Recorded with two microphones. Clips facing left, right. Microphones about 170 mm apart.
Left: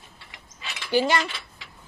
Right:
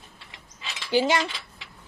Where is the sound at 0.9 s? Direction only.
15° right (ahead or behind).